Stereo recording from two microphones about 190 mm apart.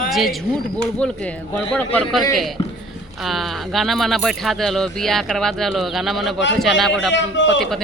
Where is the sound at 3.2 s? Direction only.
Centre (ahead or behind).